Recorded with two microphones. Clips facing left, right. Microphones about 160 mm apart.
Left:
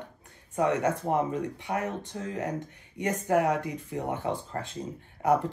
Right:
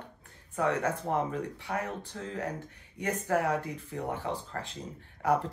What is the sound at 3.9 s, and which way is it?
Speech, 20° left (ahead or behind).